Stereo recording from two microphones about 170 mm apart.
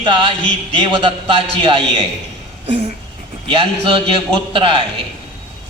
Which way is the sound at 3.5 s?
30° right (ahead or behind).